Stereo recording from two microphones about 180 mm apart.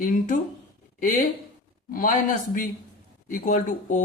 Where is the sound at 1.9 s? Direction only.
50° left (ahead or behind).